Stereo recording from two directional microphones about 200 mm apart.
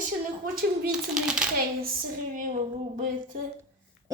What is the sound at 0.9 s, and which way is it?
Speech, 5° right (ahead or behind).